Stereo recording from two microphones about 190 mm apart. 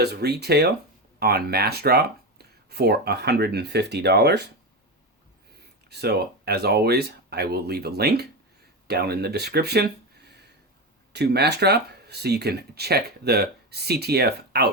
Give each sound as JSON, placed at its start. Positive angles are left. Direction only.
{"t": 0.0, "sound": "speech", "side_deg": -60}
{"t": 5.9, "sound": "speech", "side_deg": -60}